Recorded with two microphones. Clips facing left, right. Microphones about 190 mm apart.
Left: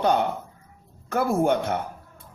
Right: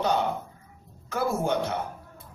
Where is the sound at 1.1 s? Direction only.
50° left (ahead or behind).